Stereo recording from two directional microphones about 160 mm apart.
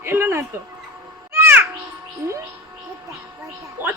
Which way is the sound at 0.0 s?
15° right (ahead or behind).